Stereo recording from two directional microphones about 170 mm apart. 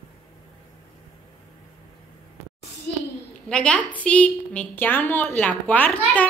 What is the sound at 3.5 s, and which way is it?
A woman's voice, 5° left (ahead or behind).